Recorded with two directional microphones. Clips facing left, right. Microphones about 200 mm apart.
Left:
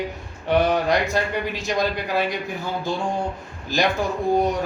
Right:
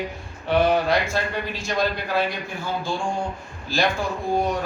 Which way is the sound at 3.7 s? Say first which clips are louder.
Left 1 dB; 20° left (ahead or behind).